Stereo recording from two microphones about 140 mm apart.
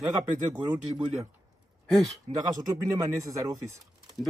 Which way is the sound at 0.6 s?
30° right (ahead or behind).